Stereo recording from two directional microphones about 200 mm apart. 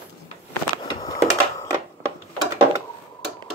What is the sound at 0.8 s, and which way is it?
Typing, 15° left (ahead or behind).